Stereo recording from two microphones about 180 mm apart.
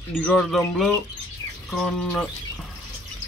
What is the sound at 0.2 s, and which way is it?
Speech, 5° left (ahead or behind).